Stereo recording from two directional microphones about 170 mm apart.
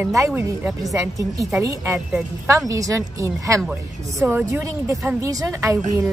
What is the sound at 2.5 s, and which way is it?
A woman's voice, 20° right (ahead or behind).